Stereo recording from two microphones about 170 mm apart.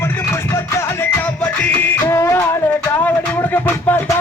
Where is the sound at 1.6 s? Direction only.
10° left (ahead or behind).